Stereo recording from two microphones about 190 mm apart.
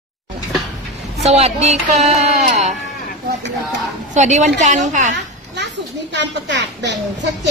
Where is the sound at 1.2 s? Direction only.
35° right (ahead or behind).